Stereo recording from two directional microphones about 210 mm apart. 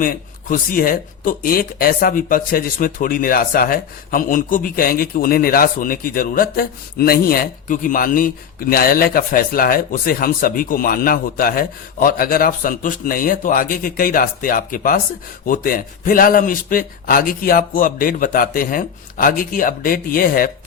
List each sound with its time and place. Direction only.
0.0 s speech: 40° left (ahead or behind)